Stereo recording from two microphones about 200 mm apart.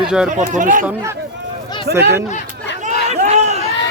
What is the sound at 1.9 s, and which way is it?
Speech, 55° right (ahead or behind).